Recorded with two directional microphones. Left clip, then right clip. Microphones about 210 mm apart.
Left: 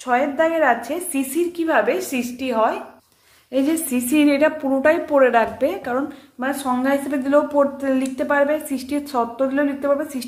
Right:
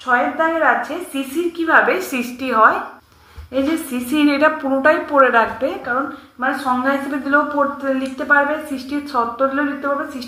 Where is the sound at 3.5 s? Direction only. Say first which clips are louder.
Right 1 dB; 30° left (ahead or behind).